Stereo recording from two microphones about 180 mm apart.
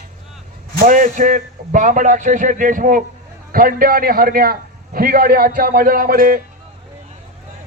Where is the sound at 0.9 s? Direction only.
45° right (ahead or behind).